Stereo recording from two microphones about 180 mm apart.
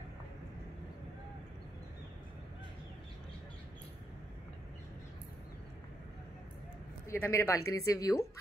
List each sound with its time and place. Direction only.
7.1 s speech: 15° left (ahead or behind)